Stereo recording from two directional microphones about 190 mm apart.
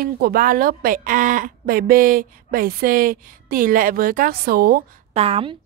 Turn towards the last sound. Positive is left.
turn(degrees=-30)  # may be behind; listen again after turning